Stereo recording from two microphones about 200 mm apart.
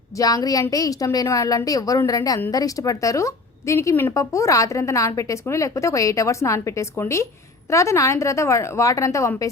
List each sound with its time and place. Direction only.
0.2 s a woman's voice: 15° left (ahead or behind)